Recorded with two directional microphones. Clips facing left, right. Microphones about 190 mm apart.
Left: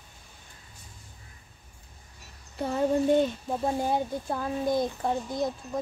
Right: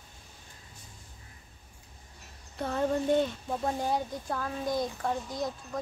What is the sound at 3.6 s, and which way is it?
Speech, 25° left (ahead or behind).